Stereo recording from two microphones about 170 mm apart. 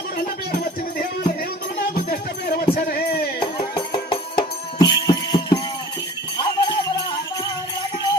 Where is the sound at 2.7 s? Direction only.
60° left (ahead or behind).